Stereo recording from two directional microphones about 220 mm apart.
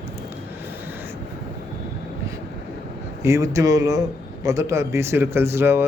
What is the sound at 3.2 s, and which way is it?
A man's voice, 15° right (ahead or behind).